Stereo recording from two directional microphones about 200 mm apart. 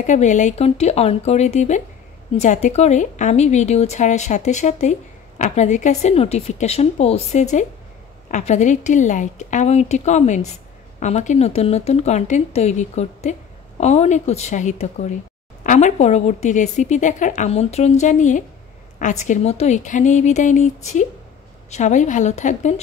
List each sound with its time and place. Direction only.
0.0 s a woman's voice: 35° left (ahead or behind)